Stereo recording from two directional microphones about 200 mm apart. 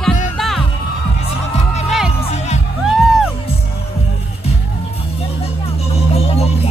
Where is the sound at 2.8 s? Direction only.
Centre (ahead or behind).